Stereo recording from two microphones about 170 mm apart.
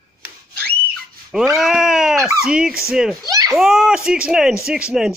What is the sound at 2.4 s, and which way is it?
Speech, 5° right (ahead or behind).